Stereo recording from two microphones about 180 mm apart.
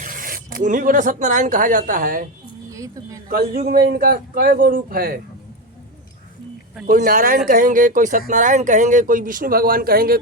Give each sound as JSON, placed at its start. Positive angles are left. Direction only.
{"t": 0.0, "sound": "speech", "side_deg": -50}
{"t": 2.6, "sound": "speech", "side_deg": -20}
{"t": 3.2, "sound": "a man's voice", "side_deg": -55}
{"t": 6.8, "sound": "speech", "side_deg": -50}